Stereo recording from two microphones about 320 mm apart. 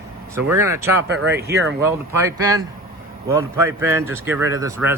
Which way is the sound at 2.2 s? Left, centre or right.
Centre.